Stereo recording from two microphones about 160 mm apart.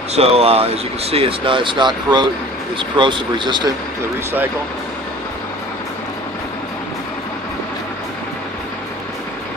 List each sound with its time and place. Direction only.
0.1 s speech: 40° right (ahead or behind)